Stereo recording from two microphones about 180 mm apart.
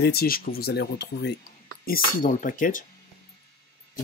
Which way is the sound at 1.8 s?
50° left (ahead or behind).